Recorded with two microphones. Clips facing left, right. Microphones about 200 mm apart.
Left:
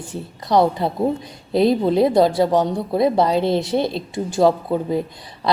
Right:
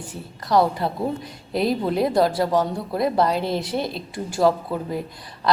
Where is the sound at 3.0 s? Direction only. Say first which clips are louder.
Left 4 dB; centre (ahead or behind).